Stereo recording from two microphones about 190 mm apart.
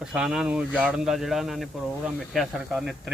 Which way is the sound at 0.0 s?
5° right (ahead or behind).